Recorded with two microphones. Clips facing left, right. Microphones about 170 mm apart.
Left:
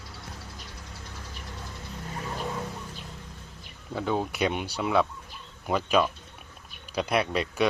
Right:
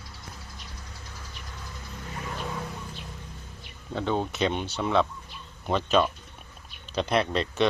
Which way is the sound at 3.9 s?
5° left (ahead or behind).